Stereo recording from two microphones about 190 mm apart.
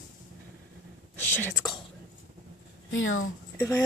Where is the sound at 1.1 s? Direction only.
10° left (ahead or behind).